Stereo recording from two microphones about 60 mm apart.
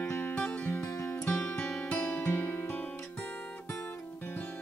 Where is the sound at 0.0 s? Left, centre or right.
Left.